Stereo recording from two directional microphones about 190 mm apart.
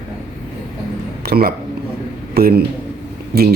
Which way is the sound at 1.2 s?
55° right (ahead or behind).